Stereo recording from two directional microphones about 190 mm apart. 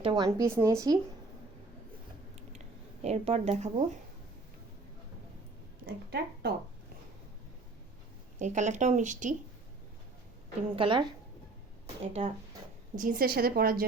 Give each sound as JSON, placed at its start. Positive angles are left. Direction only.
{"t": 0.0, "sound": "speech", "side_deg": -25}
{"t": 0.3, "sound": "speech", "side_deg": -15}
{"t": 3.0, "sound": "speech", "side_deg": -35}
{"t": 5.8, "sound": "a woman's voice", "side_deg": -55}
{"t": 8.4, "sound": "speech", "side_deg": -40}
{"t": 10.8, "sound": "speech", "side_deg": -25}
{"t": 12.2, "sound": "speech", "side_deg": -30}
{"t": 13.0, "sound": "a woman's voice", "side_deg": -45}